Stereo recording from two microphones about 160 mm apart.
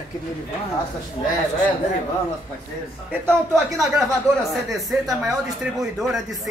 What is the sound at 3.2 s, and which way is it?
Speech, 20° right (ahead or behind).